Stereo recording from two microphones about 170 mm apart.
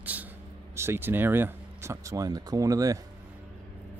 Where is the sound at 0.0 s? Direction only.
10° right (ahead or behind).